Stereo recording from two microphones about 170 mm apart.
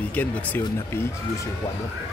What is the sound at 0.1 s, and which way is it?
Speech, 10° left (ahead or behind).